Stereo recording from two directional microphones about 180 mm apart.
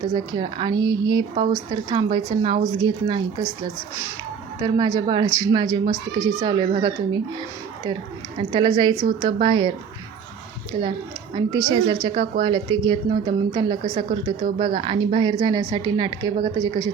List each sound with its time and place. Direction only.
0.1 s a woman's voice: 25° right (ahead or behind)
4.6 s a woman's voice: 25° right (ahead or behind)
8.4 s a woman's voice: 25° right (ahead or behind)
11.3 s a woman's voice: 25° right (ahead or behind)
13.9 s a woman's voice: 35° right (ahead or behind)